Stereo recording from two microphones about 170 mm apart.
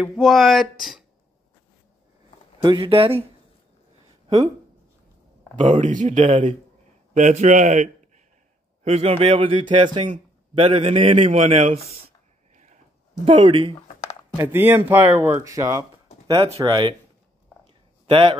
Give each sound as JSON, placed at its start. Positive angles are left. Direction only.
{"t": 0.0, "sound": "speech", "side_deg": 0}
{"t": 2.6, "sound": "a man's voice", "side_deg": -30}
{"t": 5.6, "sound": "a man's voice", "side_deg": -45}
{"t": 13.2, "sound": "speech", "side_deg": -30}
{"t": 14.3, "sound": "speech", "side_deg": -15}
{"t": 18.0, "sound": "a man's voice", "side_deg": -30}